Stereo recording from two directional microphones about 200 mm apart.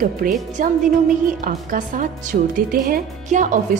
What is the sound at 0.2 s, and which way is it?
Speech, 45° right (ahead or behind).